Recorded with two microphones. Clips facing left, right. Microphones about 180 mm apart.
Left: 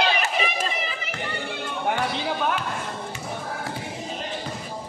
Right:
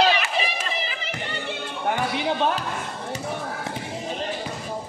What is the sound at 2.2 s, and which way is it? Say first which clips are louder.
Basketball bounce: right 2 dB; 25° right (ahead or behind).